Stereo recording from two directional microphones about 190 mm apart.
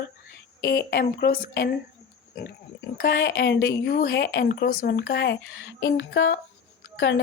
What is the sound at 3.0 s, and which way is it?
A woman's voice, 60° left (ahead or behind).